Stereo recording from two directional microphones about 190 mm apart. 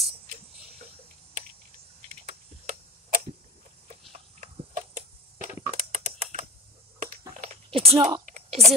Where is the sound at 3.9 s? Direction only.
40° right (ahead or behind).